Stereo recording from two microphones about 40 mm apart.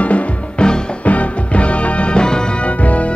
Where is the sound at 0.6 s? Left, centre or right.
Left.